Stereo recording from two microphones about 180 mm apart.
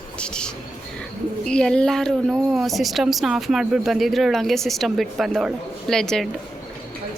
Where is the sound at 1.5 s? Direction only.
5° left (ahead or behind).